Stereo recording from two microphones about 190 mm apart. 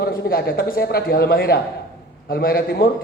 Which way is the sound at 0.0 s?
55° left (ahead or behind).